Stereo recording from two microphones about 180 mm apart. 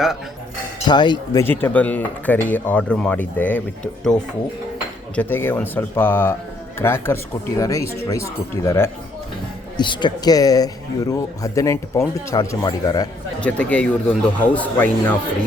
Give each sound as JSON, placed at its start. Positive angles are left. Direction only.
{"t": 0.9, "sound": "speech", "side_deg": 25}
{"t": 5.1, "sound": "speech", "side_deg": 10}
{"t": 9.7, "sound": "speech", "side_deg": 25}
{"t": 13.4, "sound": "speech", "side_deg": 10}